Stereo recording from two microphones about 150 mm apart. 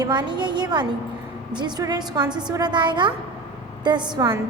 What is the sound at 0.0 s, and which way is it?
A woman's voice, 30° right (ahead or behind).